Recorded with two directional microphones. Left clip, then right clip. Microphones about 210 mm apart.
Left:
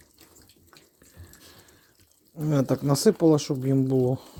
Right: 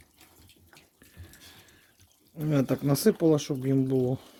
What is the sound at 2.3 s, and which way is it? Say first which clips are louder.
Speech: left 2 dB; 5° left (ahead or behind).